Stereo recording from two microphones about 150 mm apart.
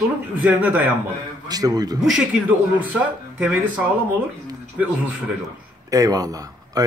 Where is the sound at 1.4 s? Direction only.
25° right (ahead or behind).